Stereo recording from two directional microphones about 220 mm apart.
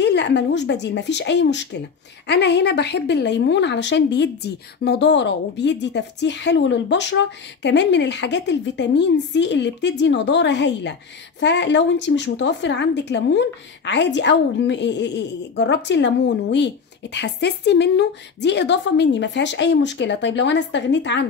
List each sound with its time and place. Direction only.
0.0 s a woman's voice: 50° left (ahead or behind)